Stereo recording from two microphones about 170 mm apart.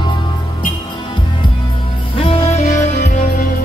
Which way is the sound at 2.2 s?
35° left (ahead or behind).